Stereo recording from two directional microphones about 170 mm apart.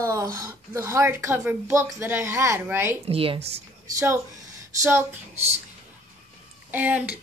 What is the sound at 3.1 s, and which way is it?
Speech, 35° right (ahead or behind).